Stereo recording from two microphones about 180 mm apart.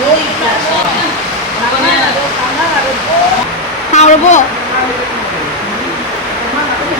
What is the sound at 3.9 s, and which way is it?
Speech, 40° left (ahead or behind).